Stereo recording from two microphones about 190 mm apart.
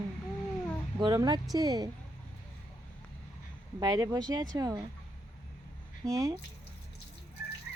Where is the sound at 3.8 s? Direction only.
20° right (ahead or behind).